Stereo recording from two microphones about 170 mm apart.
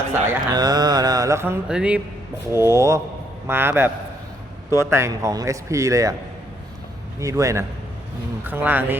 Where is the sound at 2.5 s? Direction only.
15° right (ahead or behind).